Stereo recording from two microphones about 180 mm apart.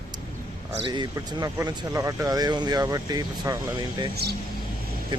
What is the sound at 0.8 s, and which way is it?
Speech, 25° right (ahead or behind).